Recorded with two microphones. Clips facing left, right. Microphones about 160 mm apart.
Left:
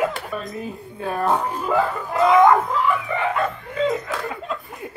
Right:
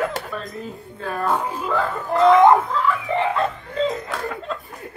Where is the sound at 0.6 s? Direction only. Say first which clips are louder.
Left 2 dB; 15° left (ahead or behind).